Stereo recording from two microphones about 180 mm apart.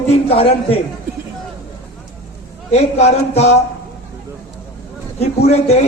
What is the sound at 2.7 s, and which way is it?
Speech, 35° left (ahead or behind).